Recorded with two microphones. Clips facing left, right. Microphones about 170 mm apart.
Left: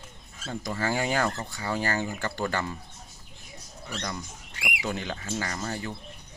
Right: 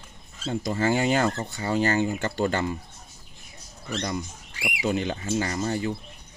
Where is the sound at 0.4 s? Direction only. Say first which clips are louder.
Right 5 dB; 25° right (ahead or behind).